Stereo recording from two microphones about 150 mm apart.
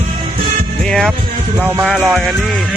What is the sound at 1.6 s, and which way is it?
Speech, 15° right (ahead or behind).